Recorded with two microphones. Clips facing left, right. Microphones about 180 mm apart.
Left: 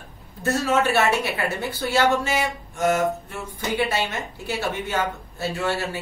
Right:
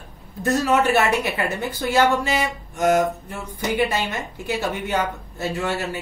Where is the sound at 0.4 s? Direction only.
15° right (ahead or behind).